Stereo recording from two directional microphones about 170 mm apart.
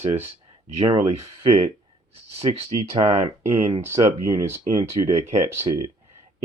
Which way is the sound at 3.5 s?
15° right (ahead or behind).